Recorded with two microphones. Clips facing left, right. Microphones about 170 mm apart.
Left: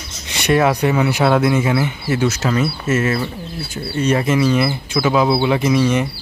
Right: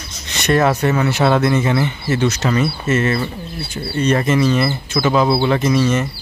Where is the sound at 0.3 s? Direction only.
10° left (ahead or behind).